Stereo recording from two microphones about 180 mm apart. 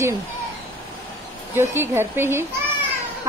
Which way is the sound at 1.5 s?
15° right (ahead or behind).